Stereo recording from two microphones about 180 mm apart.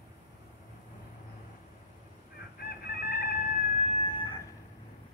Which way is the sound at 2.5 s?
55° left (ahead or behind).